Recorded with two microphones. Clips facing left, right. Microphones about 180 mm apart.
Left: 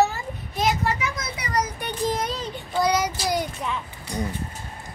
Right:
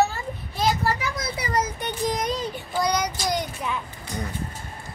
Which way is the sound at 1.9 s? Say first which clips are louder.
Even; 15° right (ahead or behind).